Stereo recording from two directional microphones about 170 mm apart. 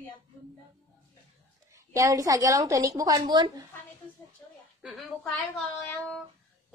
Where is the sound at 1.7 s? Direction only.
20° right (ahead or behind).